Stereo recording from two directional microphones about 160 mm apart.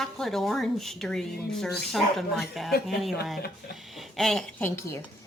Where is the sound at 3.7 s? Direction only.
Centre (ahead or behind).